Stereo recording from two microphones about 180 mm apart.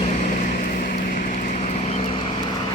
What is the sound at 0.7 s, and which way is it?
Vehicle, 45° left (ahead or behind).